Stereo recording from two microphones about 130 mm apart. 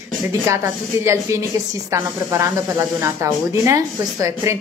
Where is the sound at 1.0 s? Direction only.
20° right (ahead or behind).